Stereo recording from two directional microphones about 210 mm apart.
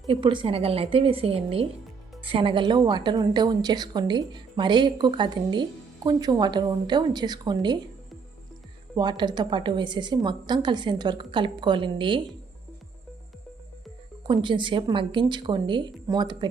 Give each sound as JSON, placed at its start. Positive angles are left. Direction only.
{"t": 0.1, "sound": "a woman's voice", "side_deg": -25}
{"t": 9.0, "sound": "a woman's voice", "side_deg": -20}
{"t": 14.3, "sound": "a woman's voice", "side_deg": -20}